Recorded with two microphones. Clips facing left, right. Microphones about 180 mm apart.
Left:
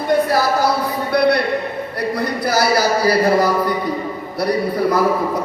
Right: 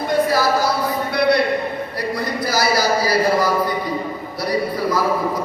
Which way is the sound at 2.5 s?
60° left (ahead or behind).